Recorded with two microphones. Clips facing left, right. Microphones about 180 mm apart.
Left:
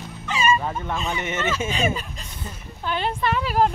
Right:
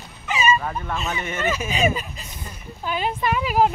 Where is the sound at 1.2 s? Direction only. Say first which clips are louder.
Left 1 dB; 20° left (ahead or behind).